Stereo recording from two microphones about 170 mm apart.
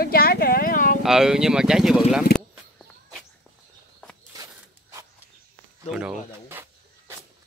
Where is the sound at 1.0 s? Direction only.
5° right (ahead or behind).